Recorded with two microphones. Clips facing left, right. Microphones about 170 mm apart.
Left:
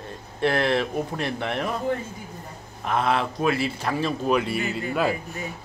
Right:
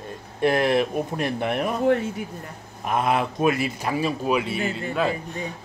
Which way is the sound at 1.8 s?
75° right (ahead or behind).